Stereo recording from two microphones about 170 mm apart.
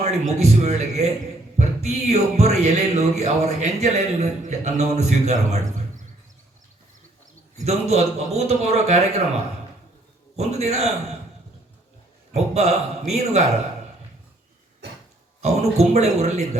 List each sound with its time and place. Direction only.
0.0 s speech: 40° right (ahead or behind)
7.5 s speech: 40° right (ahead or behind)
10.3 s speech: 40° right (ahead or behind)
12.3 s speech: 40° right (ahead or behind)
15.4 s speech: 40° right (ahead or behind)